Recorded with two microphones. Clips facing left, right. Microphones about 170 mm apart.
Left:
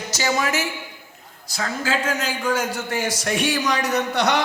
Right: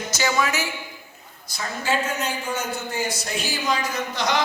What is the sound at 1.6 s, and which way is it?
A man's voice, 90° left.